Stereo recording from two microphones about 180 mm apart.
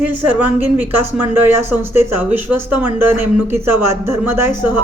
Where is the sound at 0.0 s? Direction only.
10° right (ahead or behind).